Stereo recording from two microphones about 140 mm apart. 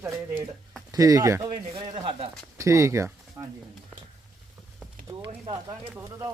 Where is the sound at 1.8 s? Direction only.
35° right (ahead or behind).